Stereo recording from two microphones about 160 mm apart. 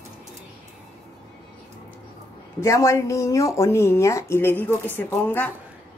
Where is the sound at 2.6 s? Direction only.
20° left (ahead or behind).